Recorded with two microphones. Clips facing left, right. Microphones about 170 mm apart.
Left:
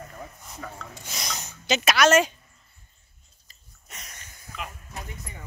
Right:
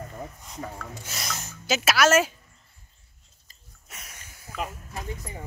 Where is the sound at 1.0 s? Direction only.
5° right (ahead or behind).